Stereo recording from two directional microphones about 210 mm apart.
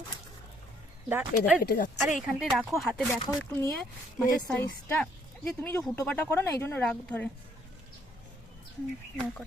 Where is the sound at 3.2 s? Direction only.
15° left (ahead or behind).